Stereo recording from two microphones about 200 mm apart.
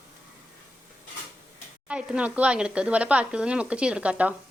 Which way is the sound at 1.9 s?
5° right (ahead or behind).